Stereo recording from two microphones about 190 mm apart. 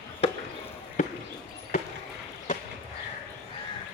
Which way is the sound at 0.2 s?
30° left (ahead or behind).